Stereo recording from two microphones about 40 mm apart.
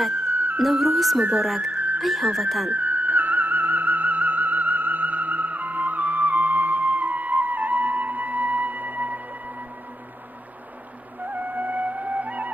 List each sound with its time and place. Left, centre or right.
0.3 s music: right
0.6 s speech: centre
1.7 s music: right
2.0 s speech: centre
2.7 s music: right
11.2 s music: right